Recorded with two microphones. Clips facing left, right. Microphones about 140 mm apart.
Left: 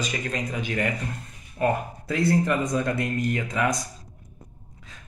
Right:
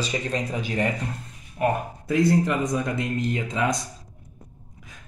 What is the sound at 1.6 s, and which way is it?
Speech, 15° right (ahead or behind).